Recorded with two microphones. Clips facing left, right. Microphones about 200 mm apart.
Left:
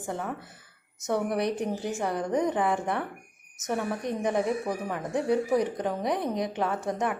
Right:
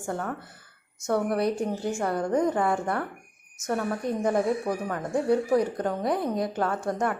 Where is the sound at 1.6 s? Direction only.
20° left (ahead or behind).